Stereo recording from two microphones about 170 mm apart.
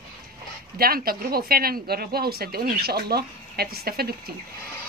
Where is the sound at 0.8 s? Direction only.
60° right (ahead or behind).